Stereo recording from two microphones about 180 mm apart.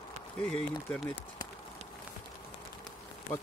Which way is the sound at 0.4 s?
5° left (ahead or behind).